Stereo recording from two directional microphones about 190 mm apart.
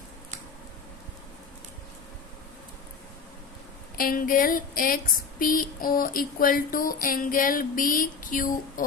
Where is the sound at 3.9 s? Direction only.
50° left (ahead or behind).